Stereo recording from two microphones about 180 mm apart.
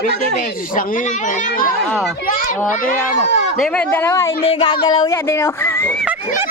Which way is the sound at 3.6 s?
10° left (ahead or behind).